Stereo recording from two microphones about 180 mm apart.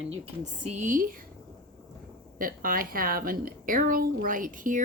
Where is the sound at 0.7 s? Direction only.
45° right (ahead or behind).